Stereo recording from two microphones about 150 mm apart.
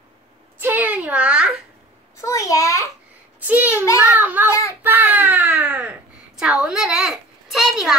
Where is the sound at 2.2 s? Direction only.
20° left (ahead or behind).